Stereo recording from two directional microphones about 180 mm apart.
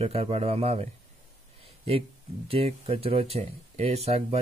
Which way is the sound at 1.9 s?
30° right (ahead or behind).